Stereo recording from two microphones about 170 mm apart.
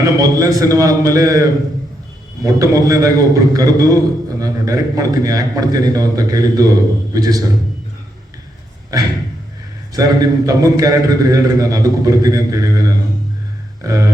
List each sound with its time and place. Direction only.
0.0 s a man's voice: 20° right (ahead or behind)
8.9 s a man's voice: 20° right (ahead or behind)